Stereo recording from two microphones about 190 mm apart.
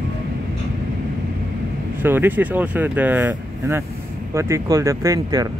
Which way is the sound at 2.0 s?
10° right (ahead or behind).